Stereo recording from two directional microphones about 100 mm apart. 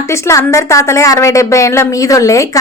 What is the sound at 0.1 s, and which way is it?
A woman's voice, 30° left (ahead or behind).